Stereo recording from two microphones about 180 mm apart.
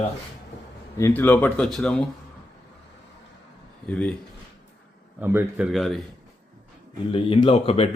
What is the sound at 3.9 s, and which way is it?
Speech, 5° left (ahead or behind).